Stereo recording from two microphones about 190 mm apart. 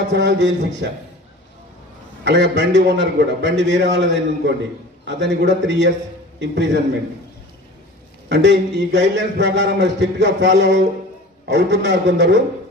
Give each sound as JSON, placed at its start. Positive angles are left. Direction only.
{"t": 0.1, "sound": "a man's voice", "side_deg": -65}
{"t": 2.2, "sound": "a man's voice", "side_deg": -65}
{"t": 8.3, "sound": "a man's voice", "side_deg": -70}